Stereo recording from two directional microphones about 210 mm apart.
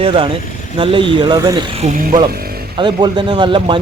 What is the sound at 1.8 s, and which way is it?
Speech, 35° right (ahead or behind).